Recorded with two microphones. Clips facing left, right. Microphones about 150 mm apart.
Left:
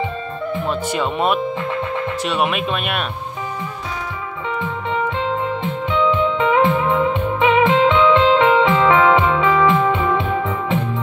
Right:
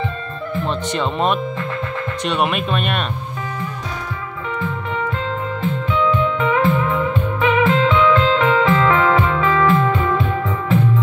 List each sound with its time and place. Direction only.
0.7 s speech: 5° left (ahead or behind)
5.6 s music: 20° left (ahead or behind)